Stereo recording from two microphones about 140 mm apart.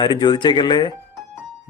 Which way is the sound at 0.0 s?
30° left (ahead or behind).